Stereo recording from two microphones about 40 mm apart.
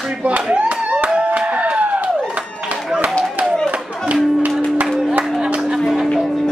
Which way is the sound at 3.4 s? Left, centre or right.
Right.